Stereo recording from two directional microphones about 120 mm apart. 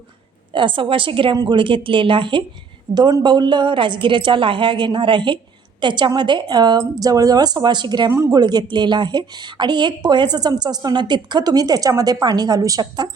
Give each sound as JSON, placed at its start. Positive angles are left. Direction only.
{"t": 0.5, "sound": "a woman's voice", "side_deg": -45}